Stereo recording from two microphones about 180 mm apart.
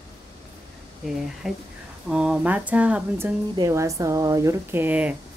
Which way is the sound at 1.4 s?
5° right (ahead or behind).